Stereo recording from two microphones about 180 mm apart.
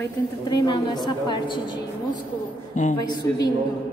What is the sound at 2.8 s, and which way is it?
Speech, 45° left (ahead or behind).